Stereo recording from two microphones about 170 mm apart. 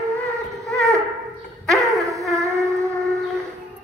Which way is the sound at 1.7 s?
Centre (ahead or behind).